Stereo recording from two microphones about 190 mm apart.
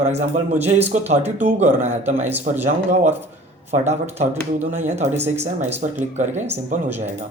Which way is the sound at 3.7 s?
35° right (ahead or behind).